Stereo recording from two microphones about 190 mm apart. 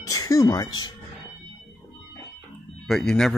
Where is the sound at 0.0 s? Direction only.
20° left (ahead or behind).